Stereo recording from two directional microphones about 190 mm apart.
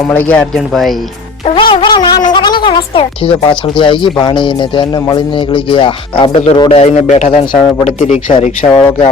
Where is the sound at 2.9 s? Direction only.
30° left (ahead or behind).